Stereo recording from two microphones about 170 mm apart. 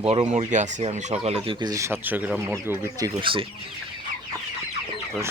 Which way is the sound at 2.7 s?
20° right (ahead or behind).